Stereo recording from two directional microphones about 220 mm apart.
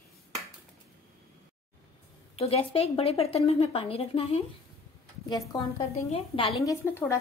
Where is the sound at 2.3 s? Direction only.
25° left (ahead or behind).